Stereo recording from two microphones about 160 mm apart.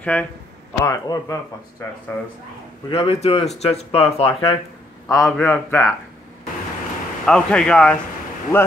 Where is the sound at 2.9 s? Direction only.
40° left (ahead or behind).